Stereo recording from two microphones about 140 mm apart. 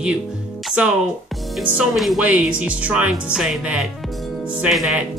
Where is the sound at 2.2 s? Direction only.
10° right (ahead or behind).